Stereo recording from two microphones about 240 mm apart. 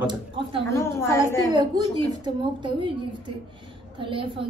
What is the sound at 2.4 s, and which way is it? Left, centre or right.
Speech, centre.